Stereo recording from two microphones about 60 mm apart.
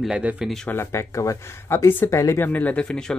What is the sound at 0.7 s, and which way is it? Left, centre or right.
Speech, left.